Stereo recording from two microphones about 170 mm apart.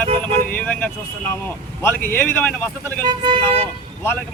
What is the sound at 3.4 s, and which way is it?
Speech, 10° left (ahead or behind).